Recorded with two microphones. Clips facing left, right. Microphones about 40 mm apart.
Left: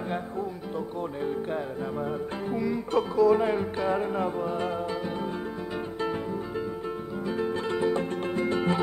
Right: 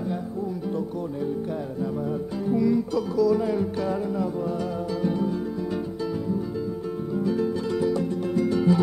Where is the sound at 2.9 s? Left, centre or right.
Left.